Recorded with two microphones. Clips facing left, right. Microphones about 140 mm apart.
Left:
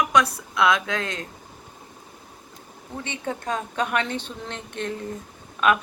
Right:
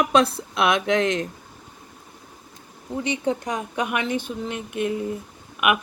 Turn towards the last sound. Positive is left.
turn(degrees=-15)  # may be behind; listen again after turning